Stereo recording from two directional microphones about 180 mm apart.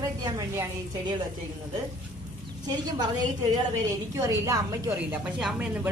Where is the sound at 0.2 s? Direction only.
20° right (ahead or behind).